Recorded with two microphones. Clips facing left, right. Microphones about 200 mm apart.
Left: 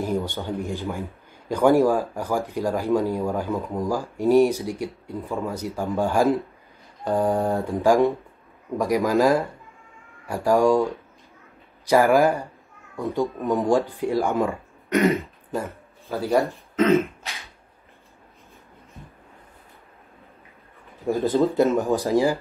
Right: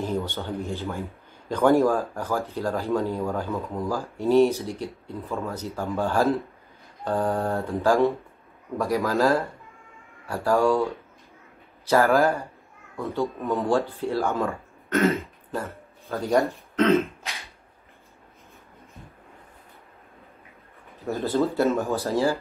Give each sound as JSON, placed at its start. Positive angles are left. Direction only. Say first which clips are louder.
{"t": 0.0, "sound": "speech", "louder": "left 2 dB", "side_deg": 10}
{"t": 16.1, "sound": "speech", "louder": "left 1 dB", "side_deg": 0}
{"t": 21.0, "sound": "speech", "louder": "left 4 dB", "side_deg": 15}